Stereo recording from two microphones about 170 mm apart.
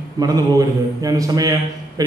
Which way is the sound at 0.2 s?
20° right (ahead or behind).